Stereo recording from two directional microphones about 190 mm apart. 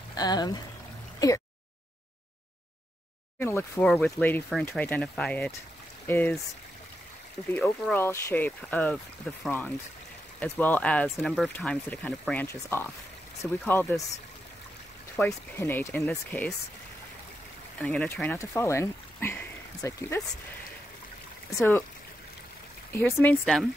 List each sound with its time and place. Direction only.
0.1 s speech: 20° left (ahead or behind)
3.3 s speech: 10° left (ahead or behind)
7.5 s speech: 10° left (ahead or behind)
15.1 s speech: 10° left (ahead or behind)
17.7 s speech: 5° left (ahead or behind)
21.5 s speech: 10° left (ahead or behind)
22.9 s speech: 10° left (ahead or behind)